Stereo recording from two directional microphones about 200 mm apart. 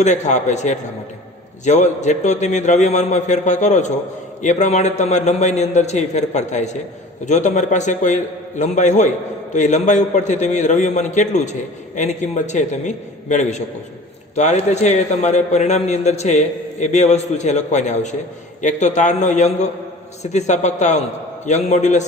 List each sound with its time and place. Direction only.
0.0 s a man's voice: 35° left (ahead or behind)